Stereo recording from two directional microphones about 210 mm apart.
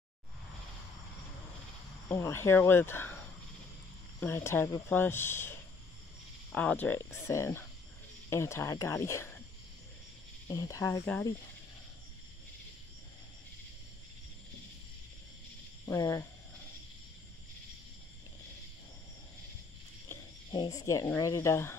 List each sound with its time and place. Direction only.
2.0 s speech: 15° left (ahead or behind)
4.2 s speech: 10° left (ahead or behind)
10.5 s speech: 15° left (ahead or behind)
15.8 s speech: 15° left (ahead or behind)
20.5 s speech: 20° left (ahead or behind)